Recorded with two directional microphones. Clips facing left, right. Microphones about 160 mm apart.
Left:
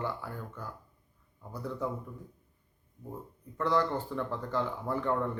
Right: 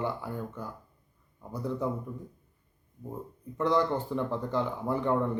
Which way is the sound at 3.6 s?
15° right (ahead or behind).